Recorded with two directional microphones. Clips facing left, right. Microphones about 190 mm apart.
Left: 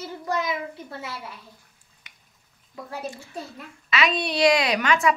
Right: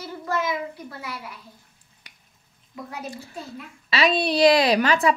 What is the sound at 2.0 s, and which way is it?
Finger snapping, 35° right (ahead or behind).